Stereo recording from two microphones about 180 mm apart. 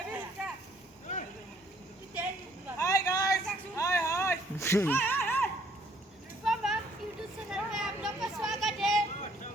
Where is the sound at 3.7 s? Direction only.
15° left (ahead or behind).